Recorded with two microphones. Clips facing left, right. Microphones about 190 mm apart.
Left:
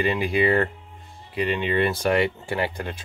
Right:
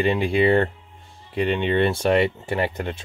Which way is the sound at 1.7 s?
25° right (ahead or behind).